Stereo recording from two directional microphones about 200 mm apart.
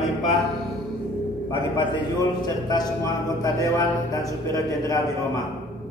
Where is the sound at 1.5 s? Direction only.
25° left (ahead or behind).